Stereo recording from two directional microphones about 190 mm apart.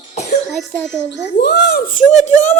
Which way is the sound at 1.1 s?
60° left (ahead or behind).